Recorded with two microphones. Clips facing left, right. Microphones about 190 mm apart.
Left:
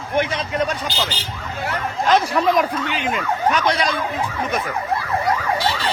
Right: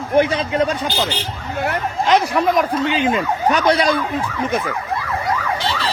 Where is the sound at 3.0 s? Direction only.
30° right (ahead or behind).